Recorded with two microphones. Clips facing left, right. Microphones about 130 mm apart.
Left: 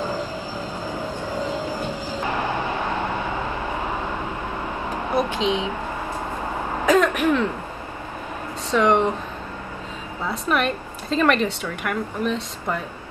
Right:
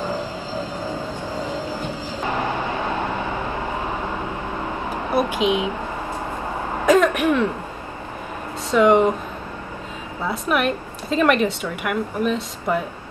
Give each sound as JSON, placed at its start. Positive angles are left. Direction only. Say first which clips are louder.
{"t": 0.9, "sound": "music", "louder": "even", "side_deg": 15}
{"t": 5.1, "sound": "speech", "louder": "right 2 dB", "side_deg": -10}
{"t": 6.9, "sound": "a woman's voice", "louder": "right 2 dB", "side_deg": 0}
{"t": 8.7, "sound": "speech", "louder": "right 4 dB", "side_deg": -5}
{"t": 10.3, "sound": "a woman's voice", "louder": "right 1 dB", "side_deg": -5}